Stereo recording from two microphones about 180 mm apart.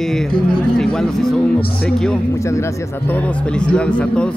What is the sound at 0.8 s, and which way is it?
Speech, centre (ahead or behind).